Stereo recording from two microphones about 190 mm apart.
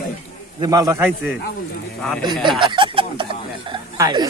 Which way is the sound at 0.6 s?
20° right (ahead or behind).